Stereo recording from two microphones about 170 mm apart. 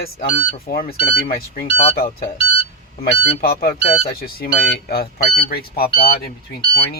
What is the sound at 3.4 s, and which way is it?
Speech, 60° left (ahead or behind).